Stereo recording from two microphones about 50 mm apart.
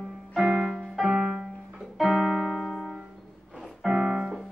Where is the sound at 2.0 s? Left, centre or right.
Centre.